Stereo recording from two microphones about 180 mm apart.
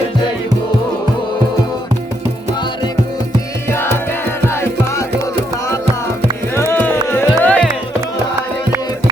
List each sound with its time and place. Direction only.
3.7 s music: 10° left (ahead or behind)